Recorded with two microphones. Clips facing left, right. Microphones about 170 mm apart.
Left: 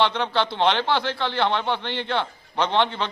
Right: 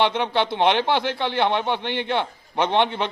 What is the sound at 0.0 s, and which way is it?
A man's voice, 15° right (ahead or behind).